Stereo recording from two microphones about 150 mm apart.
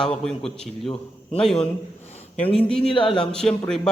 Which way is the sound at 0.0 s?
5° left (ahead or behind).